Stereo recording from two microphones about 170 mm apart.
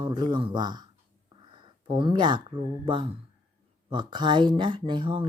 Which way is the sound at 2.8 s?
30° right (ahead or behind).